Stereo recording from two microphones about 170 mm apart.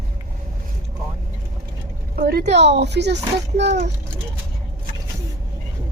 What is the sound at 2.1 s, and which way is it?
Speech, 65° right (ahead or behind).